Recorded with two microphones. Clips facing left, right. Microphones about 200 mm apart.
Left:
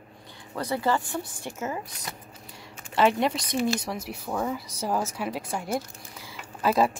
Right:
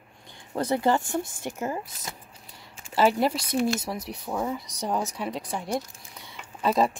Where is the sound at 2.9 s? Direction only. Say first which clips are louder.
Right 1 dB; 5° right (ahead or behind).